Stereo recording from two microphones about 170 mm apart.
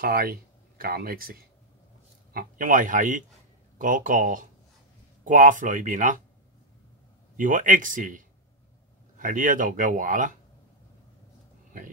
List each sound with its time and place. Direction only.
0.0 s speech: 60° right (ahead or behind)
7.3 s speech: 50° right (ahead or behind)
9.2 s speech: 50° right (ahead or behind)